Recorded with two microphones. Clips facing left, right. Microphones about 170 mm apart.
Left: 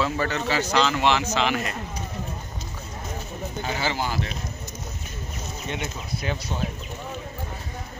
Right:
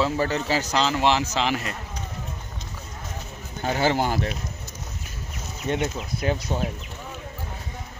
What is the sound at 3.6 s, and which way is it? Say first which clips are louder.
Speech: right 6 dB; 50° right (ahead or behind).